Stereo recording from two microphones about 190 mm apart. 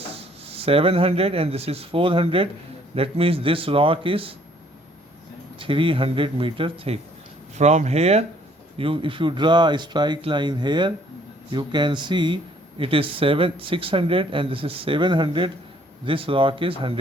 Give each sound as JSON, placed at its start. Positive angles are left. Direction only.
{"t": 0.1, "sound": "speech", "side_deg": -30}
{"t": 5.5, "sound": "speech", "side_deg": -25}